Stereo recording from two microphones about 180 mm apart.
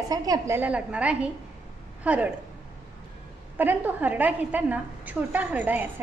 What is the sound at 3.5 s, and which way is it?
A woman's voice, 10° right (ahead or behind).